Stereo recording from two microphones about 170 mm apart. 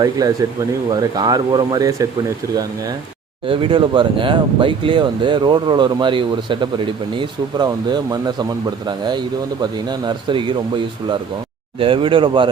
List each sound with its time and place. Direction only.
0.2 s speech: 20° right (ahead or behind)
3.4 s speech: 30° right (ahead or behind)